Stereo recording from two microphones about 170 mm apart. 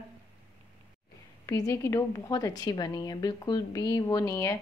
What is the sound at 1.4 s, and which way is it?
A woman's voice, 20° left (ahead or behind).